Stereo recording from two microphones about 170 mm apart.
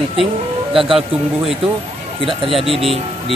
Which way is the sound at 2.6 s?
35° right (ahead or behind).